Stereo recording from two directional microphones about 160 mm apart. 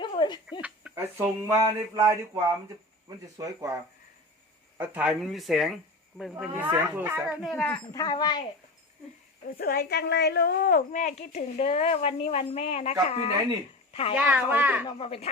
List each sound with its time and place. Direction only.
0.0 s a sound: 30° left (ahead or behind)
0.6 s speech: 10° right (ahead or behind)
4.8 s speech: 10° right (ahead or behind)
6.4 s speech: 10° right (ahead or behind)
7.4 s speech: 5° left (ahead or behind)
7.9 s a woman's voice: 25° left (ahead or behind)
9.6 s a woman's voice: 75° left (ahead or behind); by 14.2 s 35° left (ahead or behind)
14.2 s speech: 10° right (ahead or behind)
14.8 s speech: 35° left (ahead or behind)